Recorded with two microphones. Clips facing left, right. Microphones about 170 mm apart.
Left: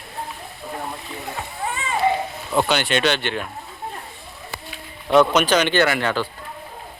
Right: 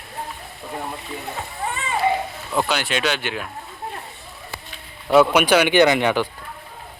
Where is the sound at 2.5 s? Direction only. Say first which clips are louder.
Left 3 dB; centre (ahead or behind).